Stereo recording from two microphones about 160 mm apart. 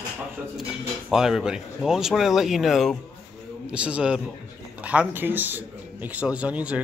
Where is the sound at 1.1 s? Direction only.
5° right (ahead or behind).